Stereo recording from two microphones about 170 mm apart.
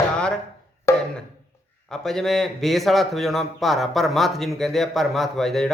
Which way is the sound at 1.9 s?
5° left (ahead or behind).